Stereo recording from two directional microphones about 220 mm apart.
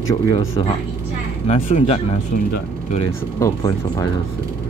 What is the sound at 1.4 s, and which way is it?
Speech, 30° left (ahead or behind).